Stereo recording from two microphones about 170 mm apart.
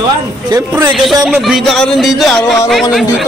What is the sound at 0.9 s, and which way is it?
Speech, centre (ahead or behind).